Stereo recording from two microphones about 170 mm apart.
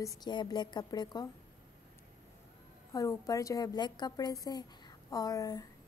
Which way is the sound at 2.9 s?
20° left (ahead or behind).